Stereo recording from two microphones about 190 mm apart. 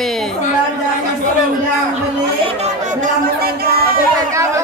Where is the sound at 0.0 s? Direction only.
Centre (ahead or behind).